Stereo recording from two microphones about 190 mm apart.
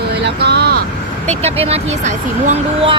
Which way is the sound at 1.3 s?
35° right (ahead or behind).